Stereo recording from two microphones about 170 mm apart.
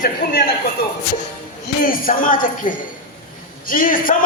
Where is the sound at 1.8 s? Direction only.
55° left (ahead or behind).